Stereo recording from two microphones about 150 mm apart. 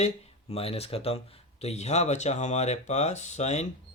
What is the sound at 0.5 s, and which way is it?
Speech, 40° left (ahead or behind).